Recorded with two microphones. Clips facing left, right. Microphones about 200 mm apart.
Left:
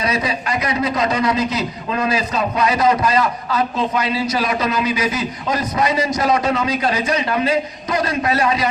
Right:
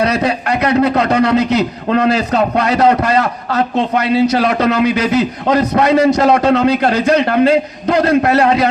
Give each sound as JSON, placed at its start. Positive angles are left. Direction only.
{"t": 0.0, "sound": "a man's voice", "side_deg": -60}